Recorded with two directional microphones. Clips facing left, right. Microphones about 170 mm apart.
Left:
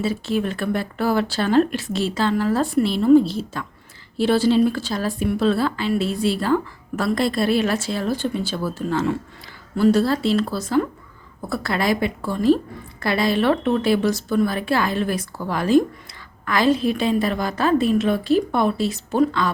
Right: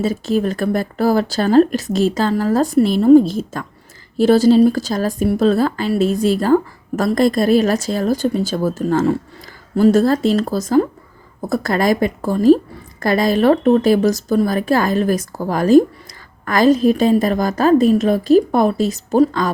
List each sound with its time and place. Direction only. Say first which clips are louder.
0.0 s a woman's voice: right 5 dB; 40° right (ahead or behind)